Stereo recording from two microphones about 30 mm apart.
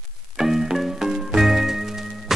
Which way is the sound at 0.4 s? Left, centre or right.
Centre.